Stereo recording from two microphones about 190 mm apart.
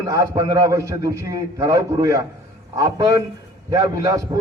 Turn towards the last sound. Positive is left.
turn(degrees=-20)  # may be behind; listen again after turning